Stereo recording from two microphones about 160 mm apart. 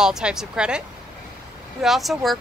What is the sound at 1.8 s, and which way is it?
Speech, centre (ahead or behind).